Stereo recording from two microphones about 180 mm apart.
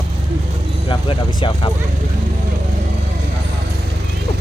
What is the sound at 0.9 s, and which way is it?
Speech, 25° left (ahead or behind).